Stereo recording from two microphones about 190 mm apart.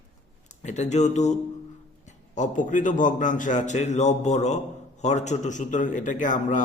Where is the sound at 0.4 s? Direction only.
40° left (ahead or behind).